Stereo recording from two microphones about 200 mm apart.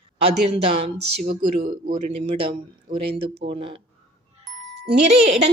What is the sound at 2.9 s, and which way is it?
Speech, 45° right (ahead or behind).